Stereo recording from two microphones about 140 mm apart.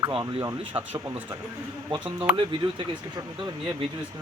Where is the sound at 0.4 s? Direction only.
20° right (ahead or behind).